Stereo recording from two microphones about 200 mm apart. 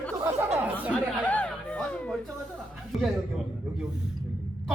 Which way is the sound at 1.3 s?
5° left (ahead or behind).